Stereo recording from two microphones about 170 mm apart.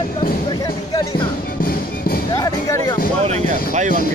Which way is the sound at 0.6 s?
20° left (ahead or behind).